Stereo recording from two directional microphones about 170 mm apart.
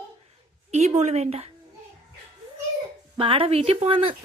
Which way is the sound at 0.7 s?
40° right (ahead or behind).